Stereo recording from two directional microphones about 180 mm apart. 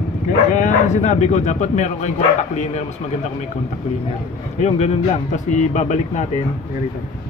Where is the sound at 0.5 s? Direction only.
45° left (ahead or behind).